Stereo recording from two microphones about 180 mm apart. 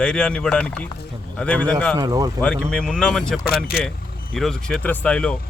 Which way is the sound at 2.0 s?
20° right (ahead or behind).